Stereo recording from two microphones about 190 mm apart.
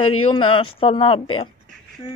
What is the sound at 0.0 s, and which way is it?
Speech, 25° left (ahead or behind).